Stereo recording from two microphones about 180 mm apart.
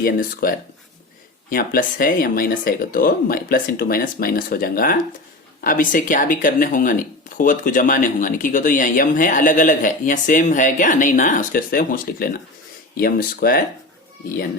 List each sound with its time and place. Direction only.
0.0 s speech: 55° left (ahead or behind)